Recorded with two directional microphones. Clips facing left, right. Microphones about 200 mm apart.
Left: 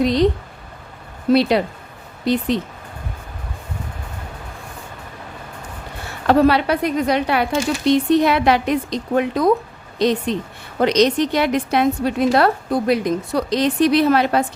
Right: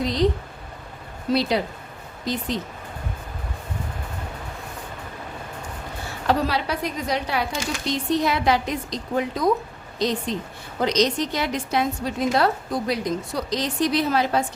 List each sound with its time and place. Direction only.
0.0 s a sound: 65° left (ahead or behind)
1.3 s a woman's voice: 65° left (ahead or behind)
6.2 s a woman's voice: 60° left (ahead or behind)